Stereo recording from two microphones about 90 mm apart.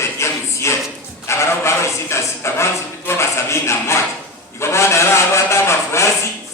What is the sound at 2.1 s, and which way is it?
Speech, 30° left (ahead or behind).